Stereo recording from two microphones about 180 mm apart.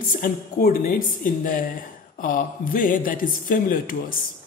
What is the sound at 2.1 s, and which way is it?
Speech, 50° left (ahead or behind).